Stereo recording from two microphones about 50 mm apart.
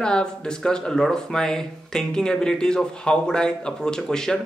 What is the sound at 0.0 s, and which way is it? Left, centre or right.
Speech, centre.